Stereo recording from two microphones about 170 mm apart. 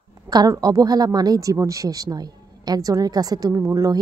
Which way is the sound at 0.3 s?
25° right (ahead or behind).